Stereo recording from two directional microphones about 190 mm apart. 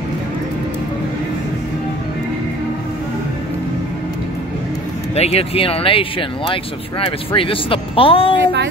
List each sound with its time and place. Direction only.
5.1 s speech: 35° left (ahead or behind)